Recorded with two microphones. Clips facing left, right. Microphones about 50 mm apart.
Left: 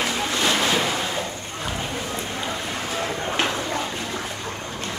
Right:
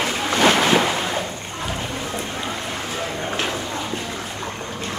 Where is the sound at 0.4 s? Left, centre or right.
Right.